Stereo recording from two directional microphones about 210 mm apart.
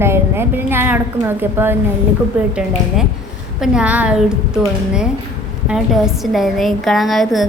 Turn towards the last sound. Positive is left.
turn(degrees=0)  # may be behind; listen again after turning